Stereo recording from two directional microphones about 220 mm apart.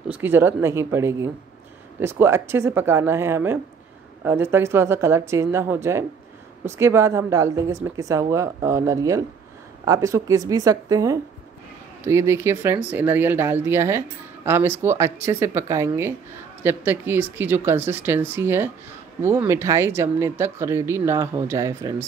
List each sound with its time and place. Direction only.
0.1 s speech: 10° right (ahead or behind)